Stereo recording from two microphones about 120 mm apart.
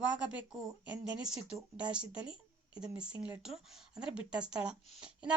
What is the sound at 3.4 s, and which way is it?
Speech, 5° right (ahead or behind).